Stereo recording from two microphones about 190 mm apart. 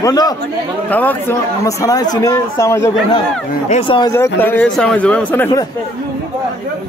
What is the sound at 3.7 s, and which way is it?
Speech, 30° left (ahead or behind).